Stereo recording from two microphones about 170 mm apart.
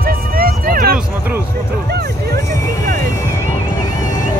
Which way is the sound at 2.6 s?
20° left (ahead or behind).